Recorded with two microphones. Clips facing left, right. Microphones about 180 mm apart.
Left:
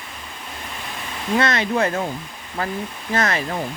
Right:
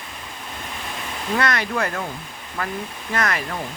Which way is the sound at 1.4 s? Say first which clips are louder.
Left 3 dB; 25° left (ahead or behind).